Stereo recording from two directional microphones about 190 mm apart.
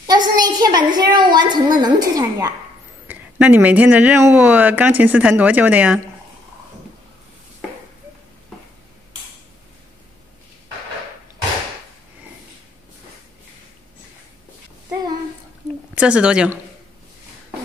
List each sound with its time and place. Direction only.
0.0 s a woman's voice: 20° right (ahead or behind)
3.1 s speech: 10° right (ahead or behind)
15.9 s a woman's voice: 5° right (ahead or behind)